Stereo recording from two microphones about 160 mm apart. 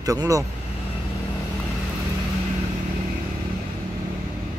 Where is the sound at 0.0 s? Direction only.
20° right (ahead or behind).